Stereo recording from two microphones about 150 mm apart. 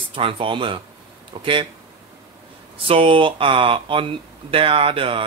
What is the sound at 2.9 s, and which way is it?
Speech, 35° right (ahead or behind).